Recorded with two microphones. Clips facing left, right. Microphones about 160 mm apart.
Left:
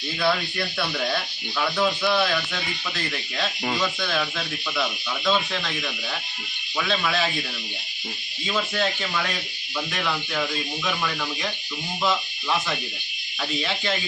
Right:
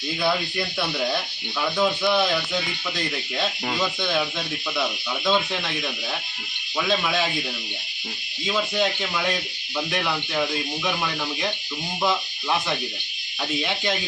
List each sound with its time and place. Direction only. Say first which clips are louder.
1.8 s speech: right 2 dB; 15° right (ahead or behind)
3.8 s speech: right 3 dB; 15° right (ahead or behind)
6.7 s speech: right 1 dB; 10° right (ahead or behind)
8.4 s speech: right 2 dB; 10° right (ahead or behind)